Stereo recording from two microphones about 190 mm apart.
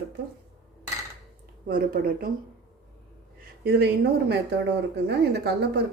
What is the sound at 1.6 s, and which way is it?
Speech, 50° right (ahead or behind).